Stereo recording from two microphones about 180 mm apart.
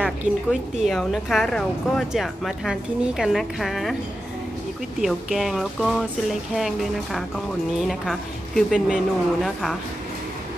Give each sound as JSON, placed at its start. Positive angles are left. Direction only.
{"t": 0.0, "sound": "a woman's voice", "side_deg": -5}
{"t": 5.0, "sound": "a woman's voice", "side_deg": -5}